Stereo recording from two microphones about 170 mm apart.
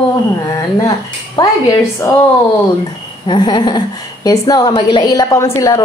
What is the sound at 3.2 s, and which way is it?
A woman's voice, 25° left (ahead or behind).